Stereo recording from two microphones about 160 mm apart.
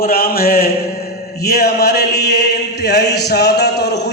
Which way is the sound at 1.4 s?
80° left.